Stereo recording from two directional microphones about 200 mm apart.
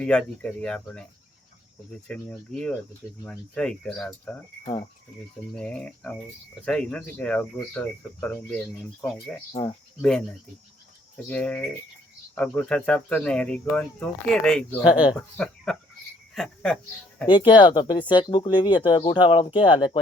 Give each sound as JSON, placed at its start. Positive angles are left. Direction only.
{"t": 0.0, "sound": "speech", "side_deg": 5}
{"t": 2.0, "sound": "speech", "side_deg": 5}
{"t": 4.6, "sound": "speech", "side_deg": 25}
{"t": 5.5, "sound": "cricket", "side_deg": 5}
{"t": 6.7, "sound": "speech", "side_deg": 5}
{"t": 11.3, "sound": "cricket", "side_deg": 5}
{"t": 12.3, "sound": "speech", "side_deg": 5}
{"t": 17.2, "sound": "speech", "side_deg": 25}